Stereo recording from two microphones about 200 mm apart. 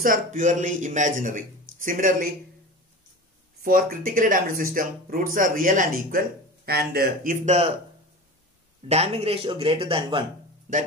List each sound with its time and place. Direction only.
0.0 s a man's voice: 40° right (ahead or behind)
3.6 s speech: 45° right (ahead or behind)
7.4 s a man's voice: 30° right (ahead or behind)
8.8 s speech: 30° right (ahead or behind)